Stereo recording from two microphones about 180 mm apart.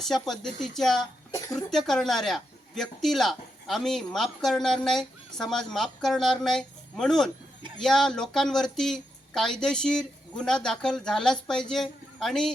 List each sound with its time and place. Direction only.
0.0 s speech: centre (ahead or behind)